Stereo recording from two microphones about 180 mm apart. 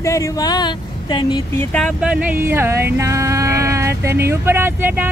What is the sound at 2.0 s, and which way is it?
Speech, 5° right (ahead or behind).